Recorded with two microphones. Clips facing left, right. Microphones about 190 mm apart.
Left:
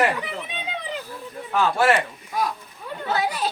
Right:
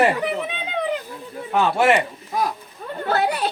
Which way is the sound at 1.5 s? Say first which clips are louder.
Right 2 dB; 20° right (ahead or behind).